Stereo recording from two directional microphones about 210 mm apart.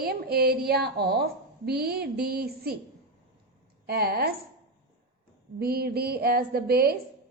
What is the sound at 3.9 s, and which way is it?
Speech, 45° right (ahead or behind).